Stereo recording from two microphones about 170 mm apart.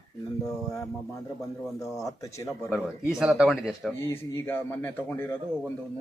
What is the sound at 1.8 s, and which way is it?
Speech, 20° left (ahead or behind).